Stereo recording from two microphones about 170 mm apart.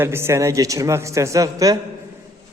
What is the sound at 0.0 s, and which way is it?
A man's voice, 15° right (ahead or behind).